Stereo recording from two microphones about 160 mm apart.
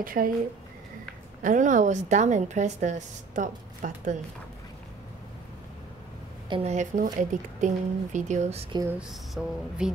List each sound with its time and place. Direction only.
0.0 s speech: 60° right (ahead or behind)
1.4 s a woman's voice: 55° right (ahead or behind)
6.5 s a woman's voice: 45° right (ahead or behind)
9.1 s speech: centre (ahead or behind)